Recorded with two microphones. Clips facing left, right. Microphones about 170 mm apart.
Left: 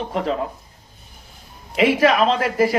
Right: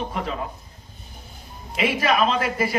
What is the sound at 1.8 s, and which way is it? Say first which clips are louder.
Speech: left 7 dB; 90° left.